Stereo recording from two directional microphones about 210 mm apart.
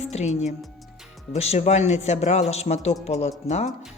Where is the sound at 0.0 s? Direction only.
30° left (ahead or behind).